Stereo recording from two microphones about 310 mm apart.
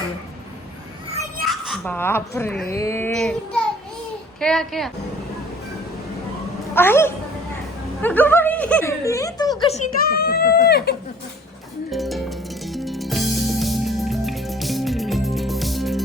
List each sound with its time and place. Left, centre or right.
1.5 s a woman's voice: centre
6.7 s a woman's voice: centre
10.1 s speech: left
11.9 s music: centre